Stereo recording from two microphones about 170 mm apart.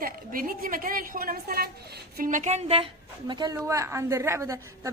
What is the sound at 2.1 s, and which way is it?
A woman's voice, 50° right (ahead or behind).